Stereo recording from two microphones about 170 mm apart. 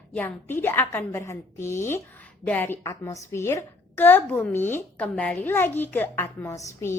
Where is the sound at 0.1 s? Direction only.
10° left (ahead or behind).